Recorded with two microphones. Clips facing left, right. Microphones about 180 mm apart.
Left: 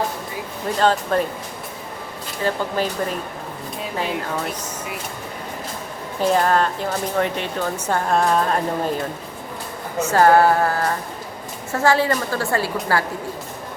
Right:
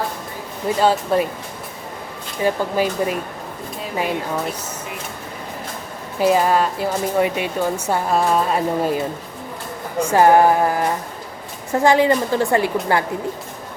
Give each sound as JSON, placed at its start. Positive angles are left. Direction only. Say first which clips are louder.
{"t": 0.8, "sound": "speech", "louder": "right 1 dB", "side_deg": -10}
{"t": 2.4, "sound": "speech", "louder": "right 3 dB", "side_deg": -10}
{"t": 6.1, "sound": "speech", "louder": "right 2 dB", "side_deg": -10}